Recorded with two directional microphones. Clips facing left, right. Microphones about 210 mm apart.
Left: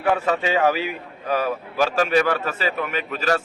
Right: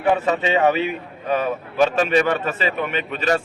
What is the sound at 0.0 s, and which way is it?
A man's voice, centre (ahead or behind).